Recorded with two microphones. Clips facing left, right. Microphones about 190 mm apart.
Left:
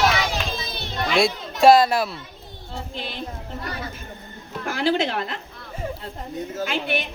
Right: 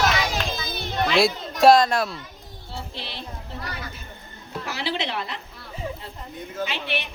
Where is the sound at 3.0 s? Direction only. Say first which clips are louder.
Left 4 dB; 45° left (ahead or behind).